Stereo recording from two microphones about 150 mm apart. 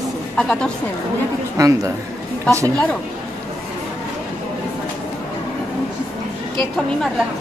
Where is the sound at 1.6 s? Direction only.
20° right (ahead or behind).